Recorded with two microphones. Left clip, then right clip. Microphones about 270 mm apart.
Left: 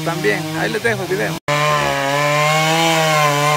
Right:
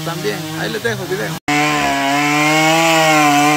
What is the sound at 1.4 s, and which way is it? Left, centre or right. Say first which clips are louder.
Chainsaw: right 2 dB; centre.